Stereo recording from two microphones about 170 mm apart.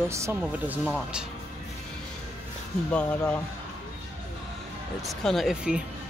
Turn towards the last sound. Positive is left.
turn(degrees=-5)  # may be behind; listen again after turning